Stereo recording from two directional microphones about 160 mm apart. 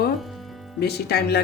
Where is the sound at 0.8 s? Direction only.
90° left.